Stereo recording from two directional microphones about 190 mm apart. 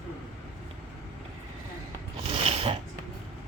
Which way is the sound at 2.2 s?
30° right (ahead or behind).